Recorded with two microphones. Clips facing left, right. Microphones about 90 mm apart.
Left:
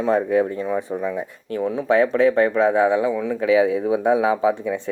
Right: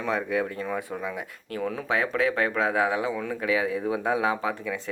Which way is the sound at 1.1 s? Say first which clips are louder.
Left 7 dB; 25° left (ahead or behind).